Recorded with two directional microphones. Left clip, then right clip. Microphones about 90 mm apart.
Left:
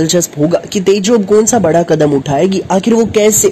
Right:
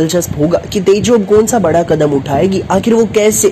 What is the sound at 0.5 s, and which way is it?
A man's voice, 25° left (ahead or behind).